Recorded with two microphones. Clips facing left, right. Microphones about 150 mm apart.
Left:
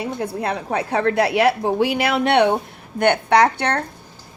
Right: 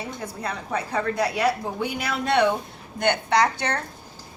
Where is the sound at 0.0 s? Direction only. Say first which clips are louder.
Left 8 dB; 75° left (ahead or behind).